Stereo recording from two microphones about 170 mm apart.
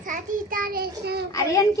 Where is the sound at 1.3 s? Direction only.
20° left (ahead or behind).